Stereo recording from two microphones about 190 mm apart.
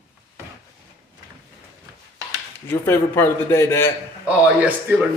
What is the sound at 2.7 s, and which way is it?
A man's voice, 10° left (ahead or behind).